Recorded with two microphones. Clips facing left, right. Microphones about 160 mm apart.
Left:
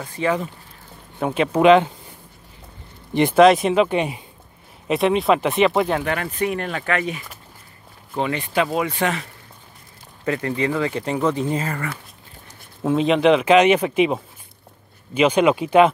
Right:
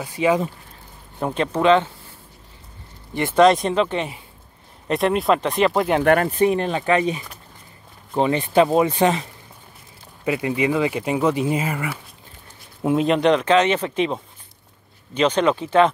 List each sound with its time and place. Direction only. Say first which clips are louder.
0.0 s speech: right 3 dB; 10° right (ahead or behind)
1.2 s speech: left 3 dB; 5° left (ahead or behind)
3.3 s speech: left 1 dB; 5° left (ahead or behind)
4.8 s speech: left 1 dB; centre (ahead or behind)
6.2 s speech: right 5 dB; 30° right (ahead or behind); by 12.0 s 10° right (ahead or behind)
12.8 s speech: left 1 dB; centre (ahead or behind)